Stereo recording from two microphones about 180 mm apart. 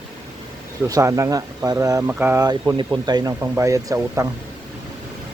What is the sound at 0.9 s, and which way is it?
Speech, 15° right (ahead or behind).